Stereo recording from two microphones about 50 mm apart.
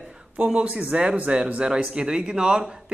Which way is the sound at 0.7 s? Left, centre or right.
Right.